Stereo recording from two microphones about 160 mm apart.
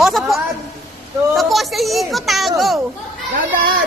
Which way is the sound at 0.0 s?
Centre (ahead or behind).